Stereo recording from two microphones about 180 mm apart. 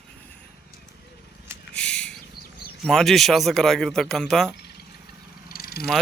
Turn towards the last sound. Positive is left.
turn(degrees=55)  # may be behind; listen again after turning